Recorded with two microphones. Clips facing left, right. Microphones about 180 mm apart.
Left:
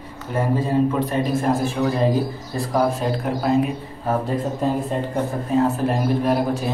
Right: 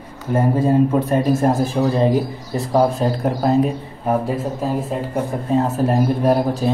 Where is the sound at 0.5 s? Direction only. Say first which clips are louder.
Right 3 dB; 45° right (ahead or behind).